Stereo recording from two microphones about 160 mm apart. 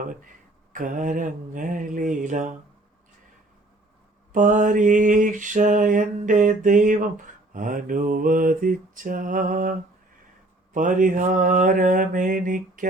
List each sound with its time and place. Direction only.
0.0 s mantra: 60° right (ahead or behind)
4.3 s mantra: 55° right (ahead or behind)
10.8 s mantra: 55° right (ahead or behind)